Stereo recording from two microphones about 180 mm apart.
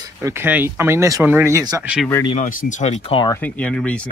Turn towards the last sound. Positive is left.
turn(degrees=5)  # may be behind; listen again after turning